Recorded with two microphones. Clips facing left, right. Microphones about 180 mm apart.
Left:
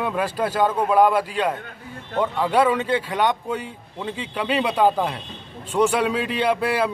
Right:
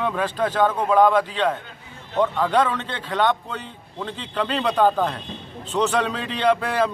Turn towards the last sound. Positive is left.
turn(degrees=10)  # may be behind; listen again after turning